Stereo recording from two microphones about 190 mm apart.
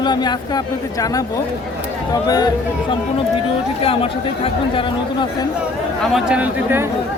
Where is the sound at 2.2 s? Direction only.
20° left (ahead or behind).